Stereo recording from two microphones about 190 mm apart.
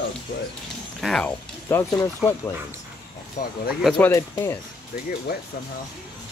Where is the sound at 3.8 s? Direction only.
Centre (ahead or behind).